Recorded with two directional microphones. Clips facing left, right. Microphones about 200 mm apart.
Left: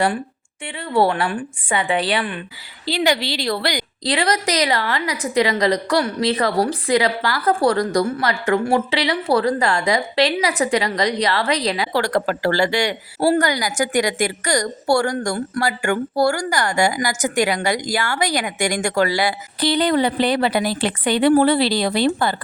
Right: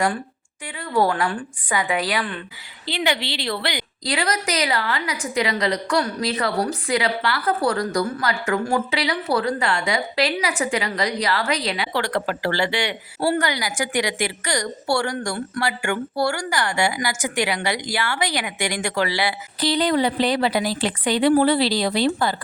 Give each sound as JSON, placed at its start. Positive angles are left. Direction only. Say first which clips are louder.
{"t": 0.9, "sound": "a woman's voice", "louder": "left 2 dB", "side_deg": 30}